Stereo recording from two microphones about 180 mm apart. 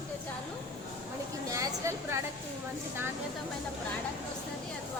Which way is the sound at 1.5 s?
15° right (ahead or behind).